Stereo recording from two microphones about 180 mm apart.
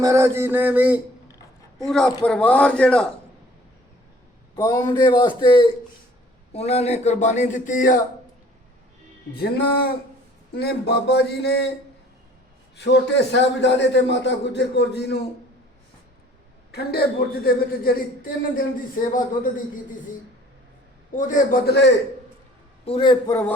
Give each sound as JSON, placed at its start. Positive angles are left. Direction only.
{"t": 0.0, "sound": "mantra", "side_deg": -15}
{"t": 1.8, "sound": "a man's voice", "side_deg": 5}
{"t": 4.5, "sound": "a man's voice", "side_deg": 20}
{"t": 10.5, "sound": "a man's voice", "side_deg": 65}
{"t": 12.7, "sound": "a man's voice", "side_deg": 70}
{"t": 16.7, "sound": "a man's voice", "side_deg": 60}
{"t": 21.2, "sound": "a man's voice", "side_deg": 45}
{"t": 21.7, "sound": "a man's voice", "side_deg": 70}
{"t": 22.9, "sound": "a man's voice", "side_deg": 30}